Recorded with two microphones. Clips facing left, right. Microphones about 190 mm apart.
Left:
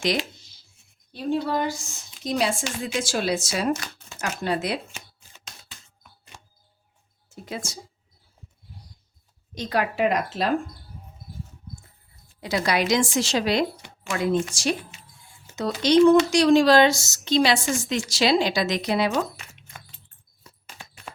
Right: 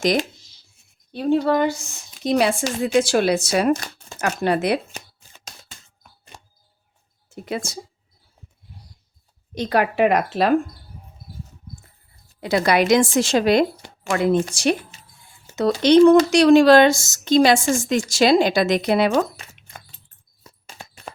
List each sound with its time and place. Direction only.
0.0 s a woman's voice: 45° right (ahead or behind)
1.1 s speech: 65° right (ahead or behind)
5.6 s a sound: 40° right (ahead or behind)
7.3 s speech: 65° right (ahead or behind)
9.6 s speech: 65° right (ahead or behind)
12.4 s speech: 55° right (ahead or behind)
15.8 s a woman's voice: 60° right (ahead or behind)
20.7 s a sound: 35° right (ahead or behind)